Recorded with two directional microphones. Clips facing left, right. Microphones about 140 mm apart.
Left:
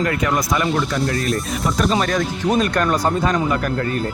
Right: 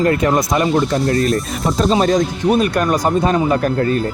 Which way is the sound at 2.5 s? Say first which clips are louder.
Right 2 dB; 10° right (ahead or behind).